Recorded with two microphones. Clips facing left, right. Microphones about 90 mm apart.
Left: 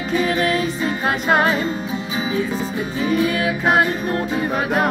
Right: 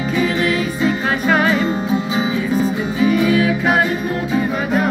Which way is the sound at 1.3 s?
40° left (ahead or behind).